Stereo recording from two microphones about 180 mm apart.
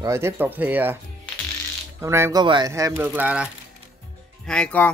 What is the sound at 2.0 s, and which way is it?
Speech, 15° right (ahead or behind).